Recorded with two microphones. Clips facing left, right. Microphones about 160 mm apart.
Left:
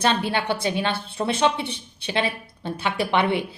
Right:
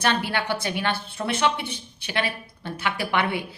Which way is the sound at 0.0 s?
20° left (ahead or behind).